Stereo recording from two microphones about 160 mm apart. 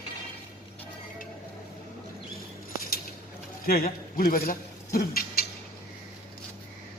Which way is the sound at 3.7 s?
70° left (ahead or behind).